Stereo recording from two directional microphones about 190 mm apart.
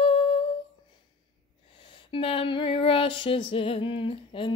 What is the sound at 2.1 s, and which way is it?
Music, 30° left (ahead or behind).